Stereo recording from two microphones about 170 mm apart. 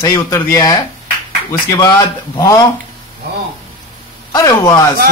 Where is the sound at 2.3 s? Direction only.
20° left (ahead or behind).